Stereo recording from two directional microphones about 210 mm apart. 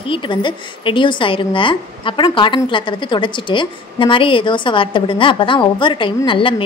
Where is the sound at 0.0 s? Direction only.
25° left (ahead or behind).